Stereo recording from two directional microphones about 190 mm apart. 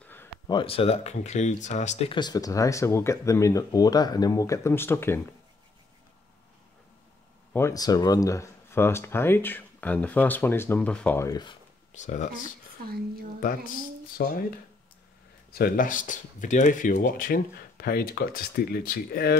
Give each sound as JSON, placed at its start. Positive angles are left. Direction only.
{"t": 0.0, "sound": "a sound", "side_deg": 10}
{"t": 0.5, "sound": "speech", "side_deg": 25}
{"t": 7.5, "sound": "speech", "side_deg": 15}
{"t": 11.9, "sound": "speech", "side_deg": 40}
{"t": 14.1, "sound": "speech", "side_deg": 50}
{"t": 15.5, "sound": "speech", "side_deg": 50}